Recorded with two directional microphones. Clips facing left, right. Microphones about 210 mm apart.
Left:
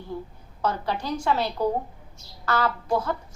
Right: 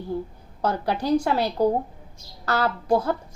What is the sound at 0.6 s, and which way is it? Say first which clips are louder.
A woman's voice: right 3 dB; 35° right (ahead or behind).